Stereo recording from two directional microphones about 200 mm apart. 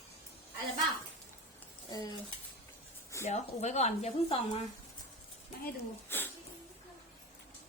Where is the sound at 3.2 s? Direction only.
35° left (ahead or behind).